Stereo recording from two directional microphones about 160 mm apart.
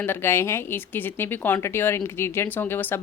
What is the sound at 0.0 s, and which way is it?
A woman's voice, 15° left (ahead or behind).